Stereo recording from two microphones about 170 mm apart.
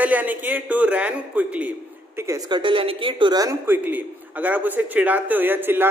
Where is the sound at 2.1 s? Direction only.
20° right (ahead or behind).